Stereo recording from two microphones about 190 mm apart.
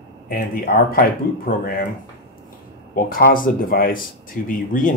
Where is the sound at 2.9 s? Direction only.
50° left (ahead or behind).